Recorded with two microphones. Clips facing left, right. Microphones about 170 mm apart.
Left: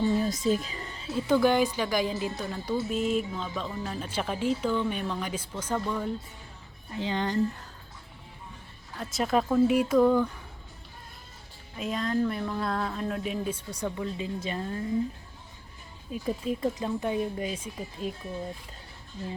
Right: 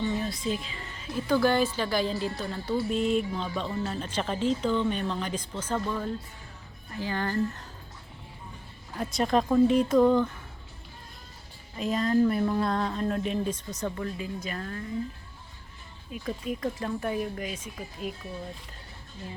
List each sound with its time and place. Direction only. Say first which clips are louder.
0.3 s speech: left 5 dB; 40° left (ahead or behind)
1.1 s speech: left 1 dB; 20° left (ahead or behind)
2.9 s a woman's voice: right 3 dB; centre (ahead or behind)
6.9 s speech: left 1 dB; 20° left (ahead or behind)
9.0 s a woman's voice: right 1 dB; centre (ahead or behind)
11.8 s a woman's voice: right 4 dB; centre (ahead or behind)
14.2 s speech: left 2 dB; 25° left (ahead or behind)
16.4 s speech: left 2 dB; 30° left (ahead or behind)
16.7 s speech: left 1 dB; 20° left (ahead or behind)